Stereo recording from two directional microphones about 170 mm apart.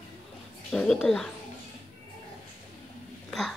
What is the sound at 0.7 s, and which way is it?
Speech, centre (ahead or behind).